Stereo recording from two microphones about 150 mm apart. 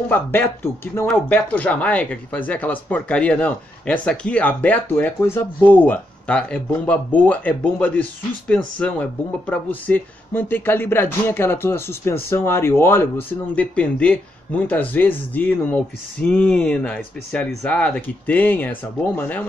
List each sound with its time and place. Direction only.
0.1 s speech: 15° left (ahead or behind)